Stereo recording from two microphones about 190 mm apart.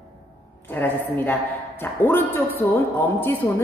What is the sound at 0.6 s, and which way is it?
A woman's voice, 10° left (ahead or behind).